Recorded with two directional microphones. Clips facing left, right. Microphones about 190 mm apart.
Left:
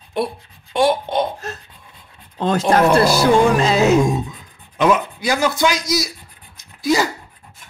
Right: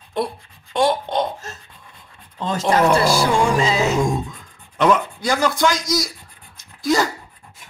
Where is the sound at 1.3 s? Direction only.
65° left (ahead or behind).